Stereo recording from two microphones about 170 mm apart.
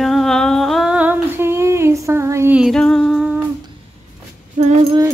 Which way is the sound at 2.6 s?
Centre (ahead or behind).